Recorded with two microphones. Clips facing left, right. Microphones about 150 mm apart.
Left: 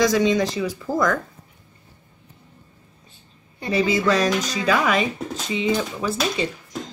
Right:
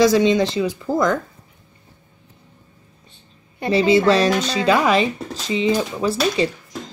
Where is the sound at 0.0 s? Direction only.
30° right (ahead or behind).